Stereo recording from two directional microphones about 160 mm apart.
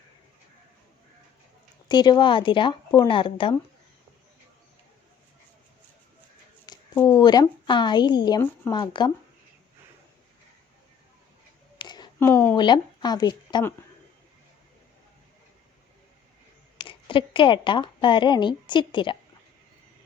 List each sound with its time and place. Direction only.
1.9 s speech: 25° left (ahead or behind)
6.9 s a sound: 10° left (ahead or behind)
7.2 s speech: 25° left (ahead or behind)
11.8 s a sound: 25° left (ahead or behind)
12.2 s speech: 15° left (ahead or behind)
12.5 s speech: 30° left (ahead or behind)
16.7 s a woman's voice: 30° left (ahead or behind)